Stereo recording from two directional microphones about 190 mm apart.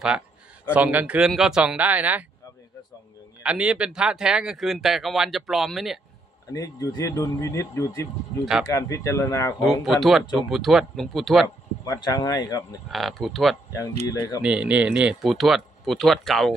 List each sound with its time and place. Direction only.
0.7 s a man's voice: 5° right (ahead or behind)
3.4 s speech: 5° right (ahead or behind)
6.5 s speech: 15° left (ahead or behind)
9.6 s speech: centre (ahead or behind)
11.4 s speech: 20° left (ahead or behind)
12.9 s speech: centre (ahead or behind)
14.0 s speech: 20° left (ahead or behind)
14.4 s speech: 5° right (ahead or behind)